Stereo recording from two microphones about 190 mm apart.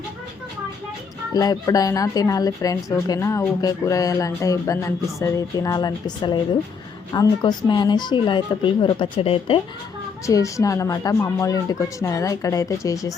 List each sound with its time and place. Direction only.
1.3 s speech: 20° left (ahead or behind)
10.2 s speech: 15° left (ahead or behind)